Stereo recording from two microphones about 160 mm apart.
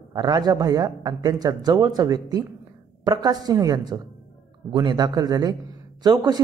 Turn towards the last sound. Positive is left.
turn(degrees=-25)  # may be behind; listen again after turning